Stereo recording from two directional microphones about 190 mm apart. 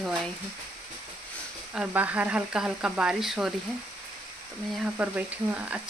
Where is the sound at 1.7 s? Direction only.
5° right (ahead or behind).